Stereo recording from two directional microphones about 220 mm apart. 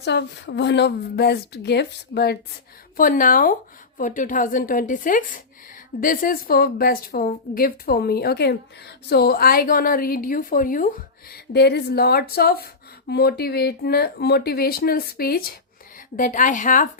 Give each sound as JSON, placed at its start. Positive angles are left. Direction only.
{"t": 0.0, "sound": "a woman's voice", "side_deg": 50}